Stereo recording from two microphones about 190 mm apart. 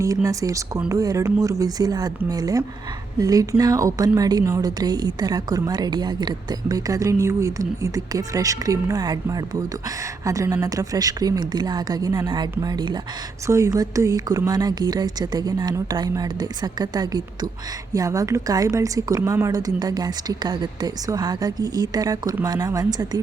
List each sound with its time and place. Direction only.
0.0 s a woman's voice: 15° right (ahead or behind)